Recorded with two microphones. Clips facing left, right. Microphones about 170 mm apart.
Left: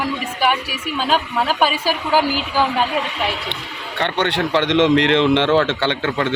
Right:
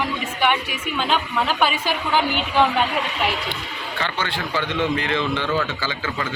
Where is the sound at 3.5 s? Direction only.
65° left (ahead or behind).